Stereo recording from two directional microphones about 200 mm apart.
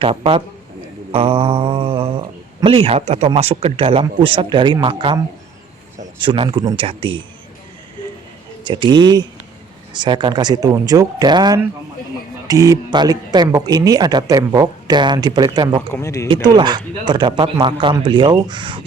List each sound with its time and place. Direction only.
0.0 s speech: 25° right (ahead or behind)
8.6 s speech: 25° right (ahead or behind)
15.9 s speech: 15° left (ahead or behind)
16.3 s speech: 20° right (ahead or behind)